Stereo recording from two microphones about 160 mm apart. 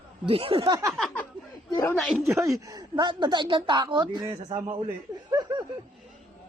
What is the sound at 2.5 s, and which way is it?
A woman's voice, 25° right (ahead or behind).